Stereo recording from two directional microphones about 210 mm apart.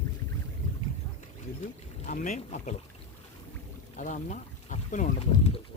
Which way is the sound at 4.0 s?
35° left (ahead or behind).